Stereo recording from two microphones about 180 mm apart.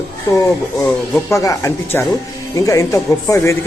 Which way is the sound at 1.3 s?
15° left (ahead or behind).